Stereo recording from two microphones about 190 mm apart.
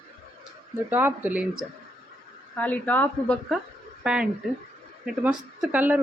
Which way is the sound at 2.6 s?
10° left (ahead or behind).